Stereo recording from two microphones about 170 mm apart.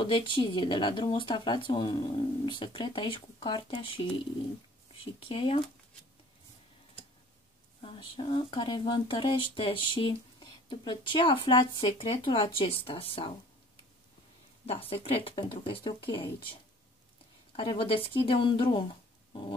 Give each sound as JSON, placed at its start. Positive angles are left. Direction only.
{"t": 0.0, "sound": "speech", "side_deg": 30}
{"t": 7.8, "sound": "speech", "side_deg": 30}
{"t": 14.7, "sound": "speech", "side_deg": 35}